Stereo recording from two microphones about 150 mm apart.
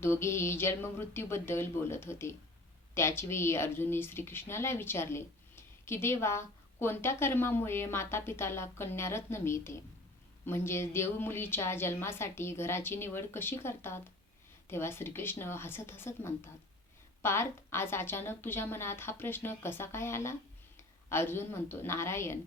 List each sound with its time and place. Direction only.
0.0 s a woman's voice: 15° left (ahead or behind)